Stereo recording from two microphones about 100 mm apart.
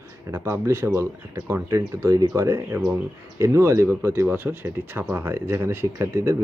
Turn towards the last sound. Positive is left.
turn(degrees=-30)  # may be behind; listen again after turning